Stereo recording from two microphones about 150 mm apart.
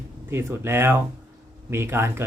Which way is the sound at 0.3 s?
15° right (ahead or behind).